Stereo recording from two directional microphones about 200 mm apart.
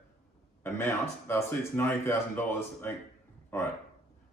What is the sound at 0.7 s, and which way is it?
Speech, 10° left (ahead or behind).